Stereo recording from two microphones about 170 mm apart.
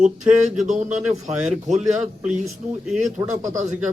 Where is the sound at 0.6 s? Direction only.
45° right (ahead or behind).